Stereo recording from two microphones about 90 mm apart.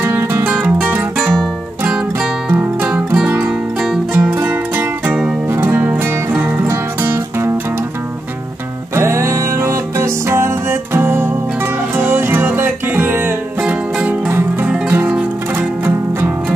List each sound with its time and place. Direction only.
0.0 s music: 25° right (ahead or behind)
1.9 s music: 10° right (ahead or behind)
2.5 s music: 25° right (ahead or behind)
2.9 s music: 15° right (ahead or behind)
8.9 s music: 30° right (ahead or behind)